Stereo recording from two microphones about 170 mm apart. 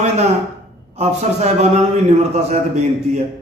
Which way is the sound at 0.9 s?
40° right (ahead or behind).